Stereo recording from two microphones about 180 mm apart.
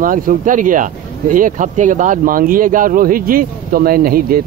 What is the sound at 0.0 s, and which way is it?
Speech, 50° right (ahead or behind).